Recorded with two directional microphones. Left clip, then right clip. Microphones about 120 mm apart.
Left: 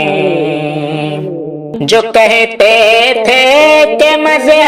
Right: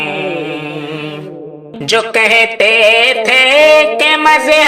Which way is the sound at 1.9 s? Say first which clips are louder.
Left 3 dB; 35° left (ahead or behind).